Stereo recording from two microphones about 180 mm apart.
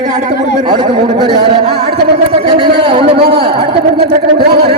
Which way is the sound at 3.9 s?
65° right (ahead or behind).